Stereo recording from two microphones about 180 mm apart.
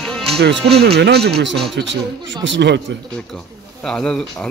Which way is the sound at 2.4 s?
85° right.